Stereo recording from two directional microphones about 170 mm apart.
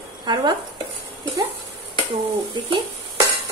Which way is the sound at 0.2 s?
25° right (ahead or behind).